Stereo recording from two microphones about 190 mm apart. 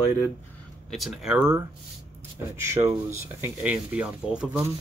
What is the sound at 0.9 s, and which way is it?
Speech, centre (ahead or behind).